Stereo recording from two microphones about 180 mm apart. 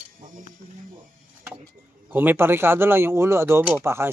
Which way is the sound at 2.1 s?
10° right (ahead or behind).